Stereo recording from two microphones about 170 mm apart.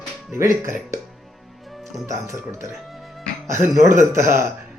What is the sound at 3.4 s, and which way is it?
Speech, 15° right (ahead or behind).